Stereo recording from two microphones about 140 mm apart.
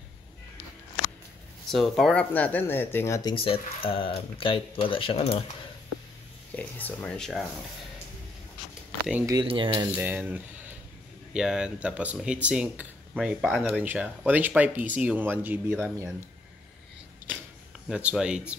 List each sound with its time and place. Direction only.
1.7 s speech: centre (ahead or behind); by 3.3 s 25° left (ahead or behind)
3.3 s speech: 40° left (ahead or behind)
6.5 s speech: 10° left (ahead or behind)
9.2 s speech: 25° right (ahead or behind)
9.5 s speech: 35° right (ahead or behind)
9.9 s speech: 15° right (ahead or behind)
17.8 s speech: 5° right (ahead or behind)